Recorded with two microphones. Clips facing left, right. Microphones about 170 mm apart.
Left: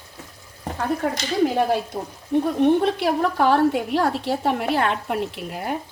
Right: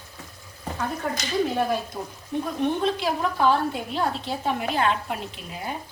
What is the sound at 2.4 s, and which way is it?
A woman's voice, 65° left (ahead or behind).